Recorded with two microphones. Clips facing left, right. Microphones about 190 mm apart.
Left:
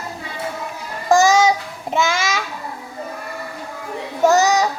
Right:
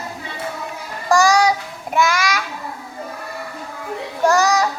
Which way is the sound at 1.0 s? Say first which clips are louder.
Left 1 dB; 20° left (ahead or behind).